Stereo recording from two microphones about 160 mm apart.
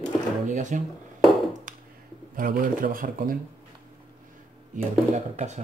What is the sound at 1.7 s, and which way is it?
Finger snapping, 55° right (ahead or behind).